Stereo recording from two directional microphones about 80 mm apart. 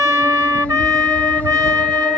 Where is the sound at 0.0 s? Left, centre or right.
Right.